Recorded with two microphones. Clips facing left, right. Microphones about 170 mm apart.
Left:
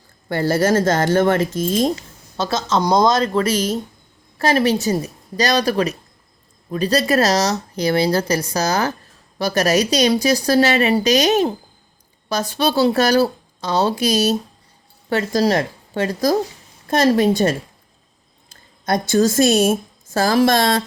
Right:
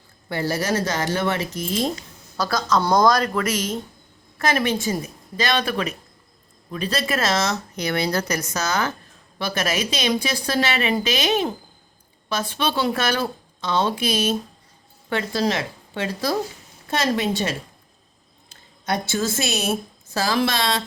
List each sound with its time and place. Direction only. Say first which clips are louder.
0.3 s a woman's voice: left 6 dB; 50° left (ahead or behind)
2.0 s a woman's voice: left 2 dB; 25° left (ahead or behind); by 17.6 s 50° left (ahead or behind)
18.9 s a woman's voice: left 7 dB; 45° left (ahead or behind)